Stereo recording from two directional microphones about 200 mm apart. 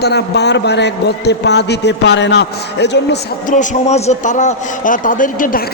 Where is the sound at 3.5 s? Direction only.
35° left (ahead or behind).